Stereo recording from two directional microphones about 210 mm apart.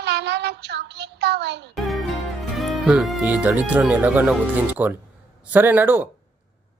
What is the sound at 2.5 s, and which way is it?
Speech, centre (ahead or behind).